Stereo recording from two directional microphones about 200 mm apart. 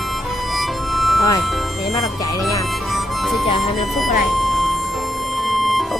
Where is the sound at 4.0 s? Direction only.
Centre (ahead or behind).